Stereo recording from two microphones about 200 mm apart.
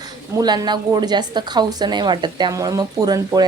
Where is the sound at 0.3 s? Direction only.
20° right (ahead or behind).